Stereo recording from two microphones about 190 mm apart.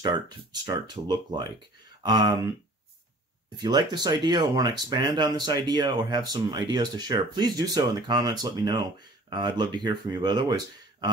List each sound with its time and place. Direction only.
0.0 s speech: 20° right (ahead or behind)
3.5 s speech: 20° right (ahead or behind)